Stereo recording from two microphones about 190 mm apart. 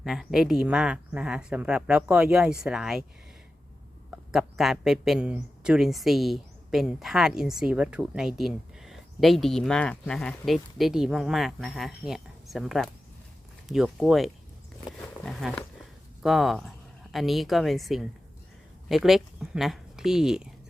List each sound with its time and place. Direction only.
0.0 s a man's voice: centre (ahead or behind)
4.1 s a man's voice: 5° right (ahead or behind)